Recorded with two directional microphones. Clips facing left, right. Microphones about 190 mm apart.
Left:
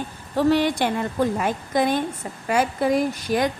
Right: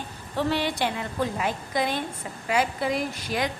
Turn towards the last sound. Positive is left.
turn(degrees=45)  # may be behind; listen again after turning